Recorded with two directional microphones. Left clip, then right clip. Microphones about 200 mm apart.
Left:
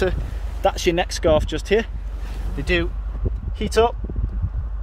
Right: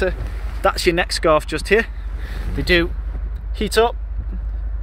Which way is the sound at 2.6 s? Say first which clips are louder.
Right 5 dB; 5° right (ahead or behind).